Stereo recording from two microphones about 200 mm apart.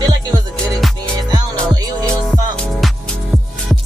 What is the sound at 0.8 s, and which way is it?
Music, centre (ahead or behind).